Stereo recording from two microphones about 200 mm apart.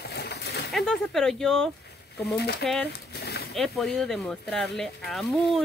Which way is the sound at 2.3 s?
55° left (ahead or behind).